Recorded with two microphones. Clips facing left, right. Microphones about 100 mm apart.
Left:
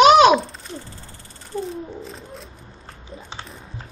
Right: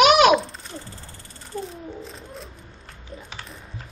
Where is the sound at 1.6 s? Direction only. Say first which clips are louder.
Left 4 dB; centre (ahead or behind).